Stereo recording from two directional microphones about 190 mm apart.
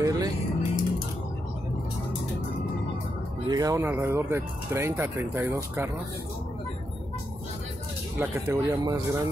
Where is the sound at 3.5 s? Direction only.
20° right (ahead or behind).